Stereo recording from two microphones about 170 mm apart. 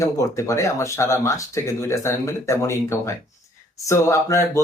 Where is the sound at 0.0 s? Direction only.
20° left (ahead or behind).